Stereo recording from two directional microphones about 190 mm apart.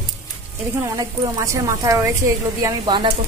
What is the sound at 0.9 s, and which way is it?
A woman's voice, 15° right (ahead or behind).